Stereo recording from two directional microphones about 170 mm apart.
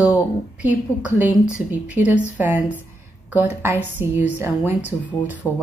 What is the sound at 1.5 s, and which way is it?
Speech, 10° right (ahead or behind).